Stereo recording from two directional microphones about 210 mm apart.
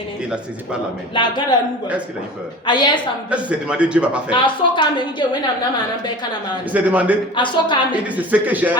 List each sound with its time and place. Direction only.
1.1 s a woman's voice: 20° left (ahead or behind)
2.6 s a woman's voice: 20° left (ahead or behind)
3.2 s a man's voice: 5° right (ahead or behind)
4.3 s a woman's voice: 25° left (ahead or behind)
6.7 s speech: 5° right (ahead or behind)
7.3 s a woman's voice: 25° left (ahead or behind)
8.0 s speech: 5° right (ahead or behind)